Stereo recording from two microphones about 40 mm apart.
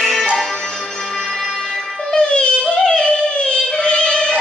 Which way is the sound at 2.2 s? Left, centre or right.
Left.